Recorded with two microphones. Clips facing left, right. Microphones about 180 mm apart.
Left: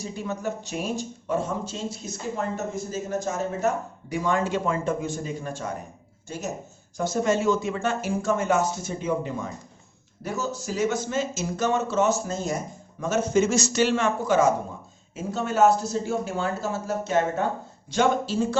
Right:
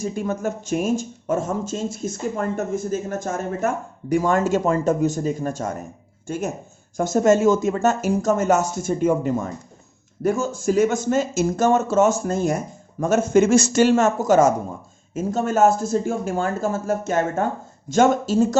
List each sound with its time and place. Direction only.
0.0 s speech: 50° right (ahead or behind)